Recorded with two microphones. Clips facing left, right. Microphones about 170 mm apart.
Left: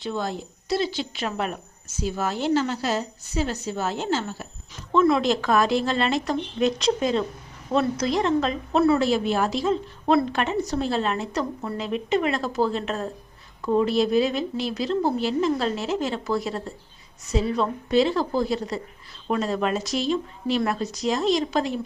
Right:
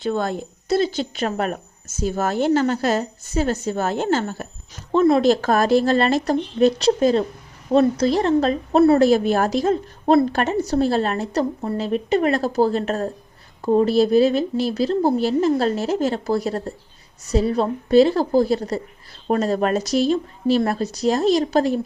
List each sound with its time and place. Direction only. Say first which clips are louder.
0.0 s speech: right 6 dB; 55° right (ahead or behind)
4.9 s speech: right 4 dB; 30° right (ahead or behind)